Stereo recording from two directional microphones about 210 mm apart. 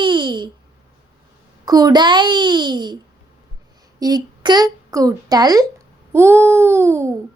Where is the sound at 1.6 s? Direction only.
20° right (ahead or behind).